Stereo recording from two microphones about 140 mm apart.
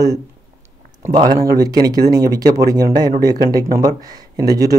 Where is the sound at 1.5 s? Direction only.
30° right (ahead or behind).